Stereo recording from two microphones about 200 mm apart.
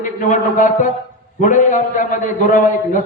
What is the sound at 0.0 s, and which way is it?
A man's voice, 40° left (ahead or behind).